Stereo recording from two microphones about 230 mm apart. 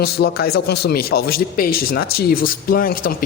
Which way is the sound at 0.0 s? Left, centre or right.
Left.